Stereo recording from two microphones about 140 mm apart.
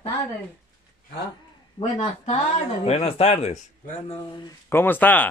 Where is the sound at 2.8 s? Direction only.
45° left (ahead or behind).